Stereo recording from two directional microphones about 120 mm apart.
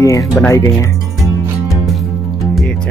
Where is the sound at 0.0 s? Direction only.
25° left (ahead or behind).